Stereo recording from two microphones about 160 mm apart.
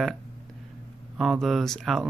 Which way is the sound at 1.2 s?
Centre (ahead or behind).